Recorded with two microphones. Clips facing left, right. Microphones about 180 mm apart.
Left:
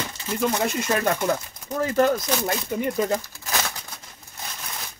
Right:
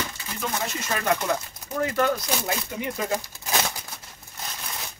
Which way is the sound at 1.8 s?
35° left (ahead or behind).